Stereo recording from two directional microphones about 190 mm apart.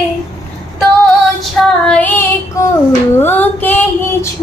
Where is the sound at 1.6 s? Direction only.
5° left (ahead or behind).